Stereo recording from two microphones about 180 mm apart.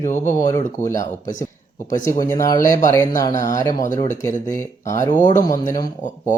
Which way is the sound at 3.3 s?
45° left (ahead or behind).